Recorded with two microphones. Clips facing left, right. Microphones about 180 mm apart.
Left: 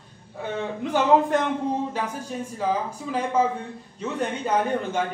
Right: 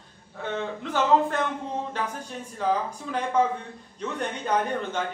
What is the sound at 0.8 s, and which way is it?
Speech, 15° left (ahead or behind).